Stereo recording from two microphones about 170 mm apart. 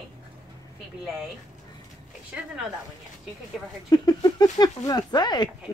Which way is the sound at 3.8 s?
20° left (ahead or behind).